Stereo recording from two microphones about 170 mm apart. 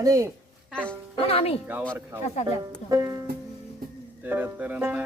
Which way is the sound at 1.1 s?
35° left (ahead or behind).